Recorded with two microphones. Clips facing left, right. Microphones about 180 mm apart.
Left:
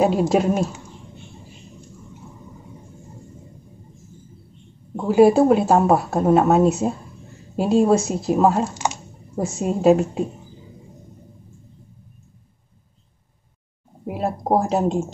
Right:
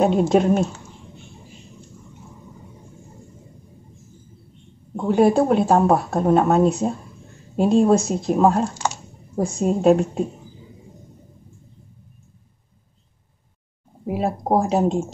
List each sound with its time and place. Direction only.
0.0 s speech: 5° left (ahead or behind)
4.9 s speech: 5° left (ahead or behind)
8.8 s computer keyboard: 15° left (ahead or behind)
9.4 s speech: 5° left (ahead or behind)
14.0 s speech: centre (ahead or behind)